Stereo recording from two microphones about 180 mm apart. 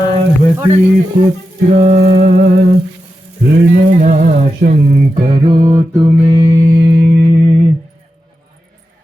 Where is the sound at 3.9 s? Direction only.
45° right (ahead or behind).